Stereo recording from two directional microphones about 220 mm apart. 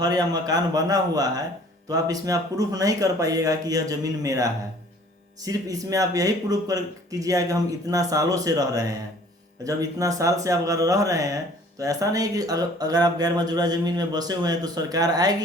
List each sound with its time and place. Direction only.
0.0 s speech: 15° right (ahead or behind)